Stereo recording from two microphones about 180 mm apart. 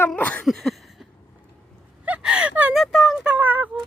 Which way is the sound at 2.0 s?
5° right (ahead or behind).